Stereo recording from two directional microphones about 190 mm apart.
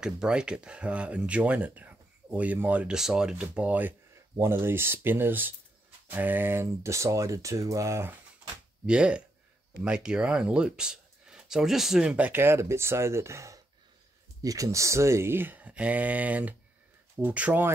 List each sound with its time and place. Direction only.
0.0 s speech: 5° right (ahead or behind)